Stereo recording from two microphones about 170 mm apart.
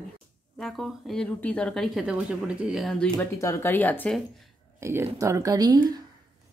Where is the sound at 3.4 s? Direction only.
15° left (ahead or behind).